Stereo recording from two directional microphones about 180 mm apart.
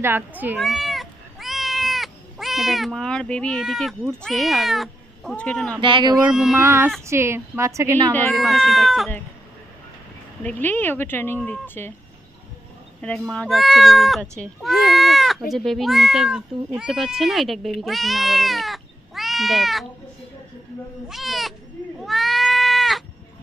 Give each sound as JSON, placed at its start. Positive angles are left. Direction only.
{"t": 0.0, "sound": "a woman's voice", "side_deg": -10}
{"t": 0.6, "sound": "cat", "side_deg": 0}
{"t": 5.8, "sound": "speech", "side_deg": -30}
{"t": 6.1, "sound": "speech", "side_deg": -5}
{"t": 7.1, "sound": "a woman's voice", "side_deg": -15}
{"t": 8.4, "sound": "speech", "side_deg": 0}
{"t": 10.4, "sound": "speech", "side_deg": 10}
{"t": 13.3, "sound": "speech", "side_deg": 0}
{"t": 21.1, "sound": "cat", "side_deg": 0}